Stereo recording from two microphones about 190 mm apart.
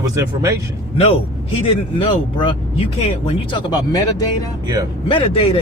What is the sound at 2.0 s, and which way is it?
Speech, 25° left (ahead or behind).